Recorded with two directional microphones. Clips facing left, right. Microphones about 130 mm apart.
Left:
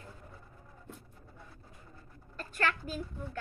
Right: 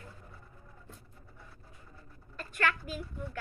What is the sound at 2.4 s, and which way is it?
Speech, 35° left (ahead or behind).